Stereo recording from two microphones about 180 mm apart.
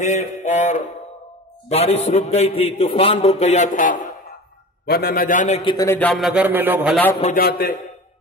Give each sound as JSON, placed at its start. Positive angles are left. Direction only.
{"t": 0.0, "sound": "music", "side_deg": 40}
{"t": 1.7, "sound": "a man's voice", "side_deg": 35}
{"t": 4.8, "sound": "music", "side_deg": 60}
{"t": 5.6, "sound": "a man's voice", "side_deg": 25}
{"t": 5.9, "sound": "a man's voice", "side_deg": 10}
{"t": 7.3, "sound": "a man's voice", "side_deg": 60}